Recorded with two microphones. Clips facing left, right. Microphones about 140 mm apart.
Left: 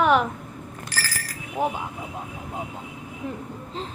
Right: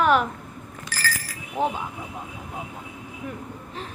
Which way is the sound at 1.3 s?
10° left (ahead or behind).